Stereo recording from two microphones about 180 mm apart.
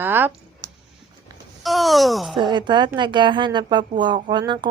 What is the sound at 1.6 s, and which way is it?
Speech, centre (ahead or behind).